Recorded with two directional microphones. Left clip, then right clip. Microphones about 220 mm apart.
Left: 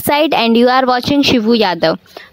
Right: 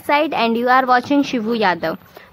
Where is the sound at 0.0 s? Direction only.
55° left (ahead or behind).